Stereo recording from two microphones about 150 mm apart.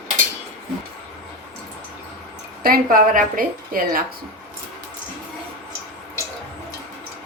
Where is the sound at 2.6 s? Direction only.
75° right (ahead or behind).